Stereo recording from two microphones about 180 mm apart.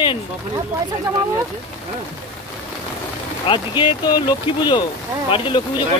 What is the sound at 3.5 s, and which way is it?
Speech, 25° left (ahead or behind).